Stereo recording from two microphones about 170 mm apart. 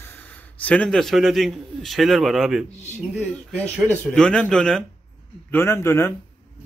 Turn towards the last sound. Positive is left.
turn(degrees=15)  # may be behind; listen again after turning